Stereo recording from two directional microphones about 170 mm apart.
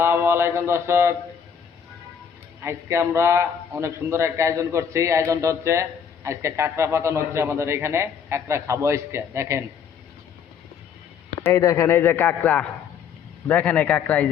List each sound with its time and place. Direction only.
0.0 s a man's voice: 15° right (ahead or behind)
2.6 s a man's voice: 15° right (ahead or behind)
11.4 s a man's voice: 15° left (ahead or behind)